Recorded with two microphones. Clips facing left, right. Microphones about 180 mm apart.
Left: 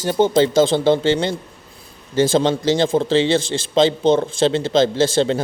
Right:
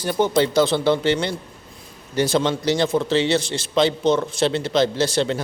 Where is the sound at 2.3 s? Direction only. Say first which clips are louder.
Left 2 dB; 25° left (ahead or behind).